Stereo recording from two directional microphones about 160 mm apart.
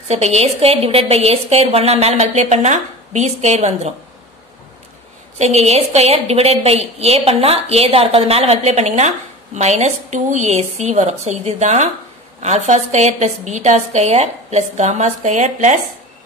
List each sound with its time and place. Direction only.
0.1 s a woman's voice: 40° right (ahead or behind)
5.4 s a woman's voice: 40° right (ahead or behind)